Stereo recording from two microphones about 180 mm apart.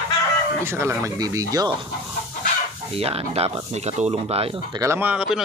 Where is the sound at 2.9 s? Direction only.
35° right (ahead or behind).